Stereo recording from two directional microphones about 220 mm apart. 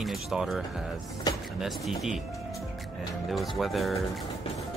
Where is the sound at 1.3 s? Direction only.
20° left (ahead or behind).